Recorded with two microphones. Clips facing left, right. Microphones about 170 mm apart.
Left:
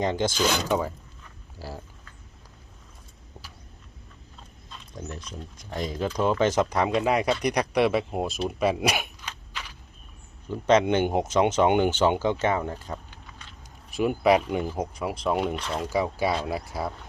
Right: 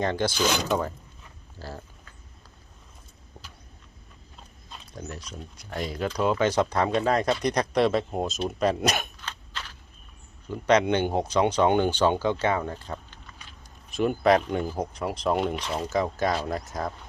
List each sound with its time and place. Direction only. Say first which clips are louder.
0.0 s speech: left 1 dB; 15° left (ahead or behind)
0.3 s speech: even; 10° right (ahead or behind)
0.7 s speech: left 1 dB; 5° left (ahead or behind)
5.3 s speech: left 1 dB; 5° right (ahead or behind)
5.9 s speech: left 1 dB; 10° left (ahead or behind)
6.1 s speech: even; 5° right (ahead or behind)
6.5 s speech: even; 15° left (ahead or behind)
8.4 s a sound: even; 5° left (ahead or behind)
10.7 s speech: left 1 dB; 20° left (ahead or behind)